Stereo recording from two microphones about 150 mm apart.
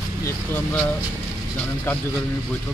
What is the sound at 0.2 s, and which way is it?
Vehicle, 10° left (ahead or behind).